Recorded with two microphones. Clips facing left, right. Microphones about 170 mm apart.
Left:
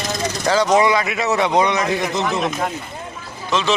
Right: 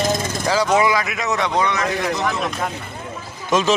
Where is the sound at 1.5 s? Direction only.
20° left (ahead or behind).